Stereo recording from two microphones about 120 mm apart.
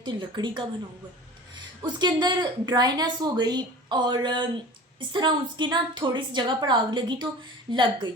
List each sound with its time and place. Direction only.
0.0 s a woman's voice: 40° right (ahead or behind)